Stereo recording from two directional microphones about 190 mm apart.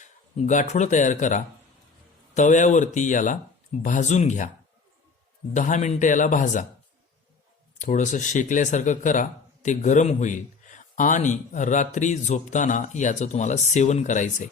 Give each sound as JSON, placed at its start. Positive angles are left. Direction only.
{"t": 0.0, "sound": "speech", "side_deg": 40}
{"t": 5.5, "sound": "speech", "side_deg": 40}
{"t": 7.8, "sound": "speech", "side_deg": 40}